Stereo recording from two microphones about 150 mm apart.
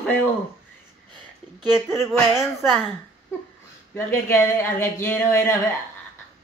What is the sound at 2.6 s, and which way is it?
Speech, 5° right (ahead or behind).